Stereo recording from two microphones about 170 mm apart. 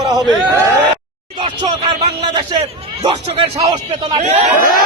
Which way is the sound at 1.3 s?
25° right (ahead or behind).